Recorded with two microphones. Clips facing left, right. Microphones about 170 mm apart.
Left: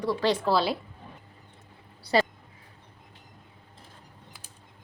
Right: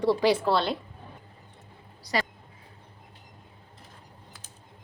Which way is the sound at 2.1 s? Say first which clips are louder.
Left 6 dB; 30° left (ahead or behind).